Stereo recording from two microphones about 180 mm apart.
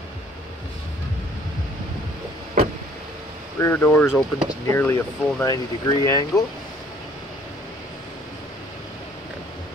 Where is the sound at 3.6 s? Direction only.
10° left (ahead or behind).